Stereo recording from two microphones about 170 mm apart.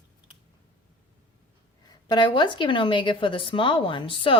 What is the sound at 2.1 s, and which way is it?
Speech, 25° left (ahead or behind).